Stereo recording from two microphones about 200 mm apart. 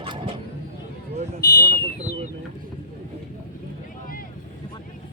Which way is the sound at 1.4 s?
50° left (ahead or behind).